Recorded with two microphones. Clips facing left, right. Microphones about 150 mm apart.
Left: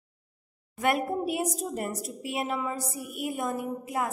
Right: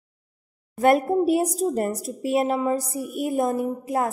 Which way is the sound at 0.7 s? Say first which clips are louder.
Right 8 dB; 40° right (ahead or behind).